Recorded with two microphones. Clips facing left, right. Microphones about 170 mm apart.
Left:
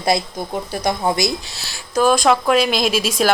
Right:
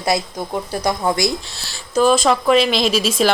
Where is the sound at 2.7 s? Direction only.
50° left (ahead or behind).